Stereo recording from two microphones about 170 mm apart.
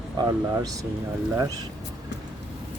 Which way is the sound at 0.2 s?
25° right (ahead or behind).